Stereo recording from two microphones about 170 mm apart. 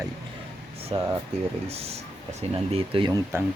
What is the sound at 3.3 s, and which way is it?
Speech, 15° right (ahead or behind).